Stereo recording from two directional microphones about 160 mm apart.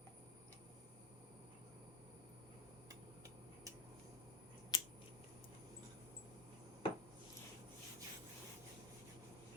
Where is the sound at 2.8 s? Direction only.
20° right (ahead or behind).